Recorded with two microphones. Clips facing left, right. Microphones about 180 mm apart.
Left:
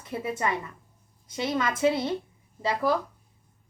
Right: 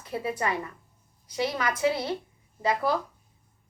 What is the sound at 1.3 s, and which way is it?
Speech, 25° left (ahead or behind).